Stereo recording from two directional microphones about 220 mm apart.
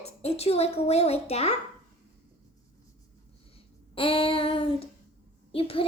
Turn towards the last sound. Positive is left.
turn(degrees=25)  # may be behind; listen again after turning